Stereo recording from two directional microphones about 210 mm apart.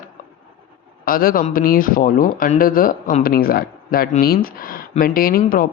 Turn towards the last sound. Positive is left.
turn(degrees=45)  # may be behind; listen again after turning